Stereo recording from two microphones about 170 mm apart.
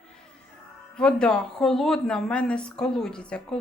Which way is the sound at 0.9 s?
5° left (ahead or behind).